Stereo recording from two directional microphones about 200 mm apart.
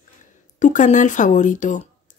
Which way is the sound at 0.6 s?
40° left (ahead or behind).